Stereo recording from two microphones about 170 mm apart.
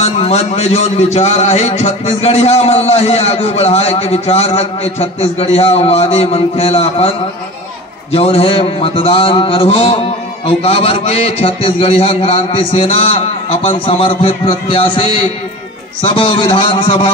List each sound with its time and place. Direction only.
0.0 s a man's voice: 40° left (ahead or behind)
8.1 s a man's voice: 35° left (ahead or behind)